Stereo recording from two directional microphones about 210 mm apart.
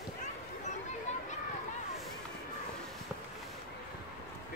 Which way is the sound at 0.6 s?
35° left (ahead or behind).